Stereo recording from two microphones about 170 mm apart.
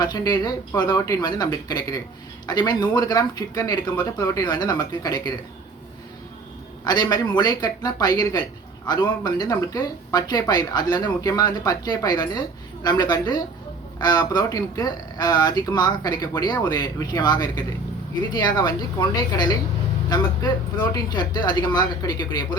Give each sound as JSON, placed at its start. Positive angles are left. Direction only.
{"t": 0.0, "sound": "speech", "side_deg": 25}
{"t": 6.8, "sound": "speech", "side_deg": 25}